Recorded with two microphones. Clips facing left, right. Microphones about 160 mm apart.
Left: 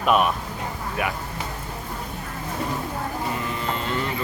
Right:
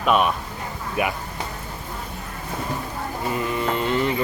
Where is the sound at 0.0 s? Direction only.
Centre (ahead or behind).